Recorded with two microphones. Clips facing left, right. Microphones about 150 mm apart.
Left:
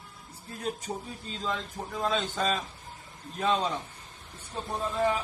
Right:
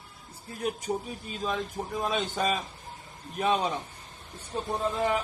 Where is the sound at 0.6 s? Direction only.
10° right (ahead or behind).